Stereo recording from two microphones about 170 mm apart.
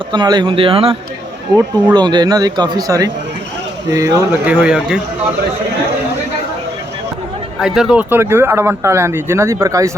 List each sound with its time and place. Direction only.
0.1 s speech: 25° right (ahead or behind)
4.4 s speech: 5° right (ahead or behind)
7.6 s speech: 5° right (ahead or behind); by 9.9 s 20° right (ahead or behind)